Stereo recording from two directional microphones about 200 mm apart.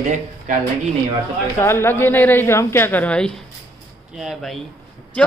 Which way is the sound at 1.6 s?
10° left (ahead or behind).